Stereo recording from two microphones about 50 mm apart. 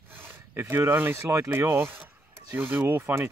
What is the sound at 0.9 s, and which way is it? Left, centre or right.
Speech, right.